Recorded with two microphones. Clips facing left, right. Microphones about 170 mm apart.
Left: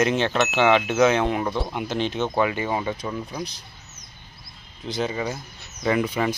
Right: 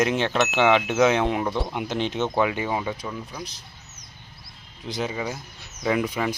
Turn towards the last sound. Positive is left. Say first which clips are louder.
# left 2 dB
turn(degrees=-5)  # may be behind; listen again after turning